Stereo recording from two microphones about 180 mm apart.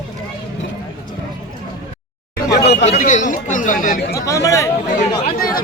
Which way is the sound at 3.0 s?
45° left (ahead or behind).